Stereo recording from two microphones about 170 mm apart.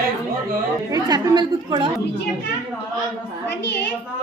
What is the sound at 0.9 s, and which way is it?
A woman's voice, 25° right (ahead or behind).